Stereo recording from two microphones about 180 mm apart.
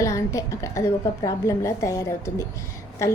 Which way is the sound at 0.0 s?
15° left (ahead or behind).